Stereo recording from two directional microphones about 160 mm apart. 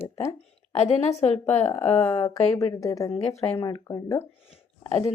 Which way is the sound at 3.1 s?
40° left (ahead or behind).